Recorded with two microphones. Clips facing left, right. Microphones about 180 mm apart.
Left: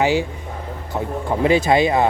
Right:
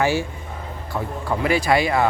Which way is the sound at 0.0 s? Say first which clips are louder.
Left 3 dB; 20° left (ahead or behind).